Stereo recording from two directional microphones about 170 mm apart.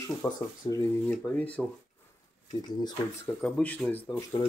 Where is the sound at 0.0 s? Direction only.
15° left (ahead or behind).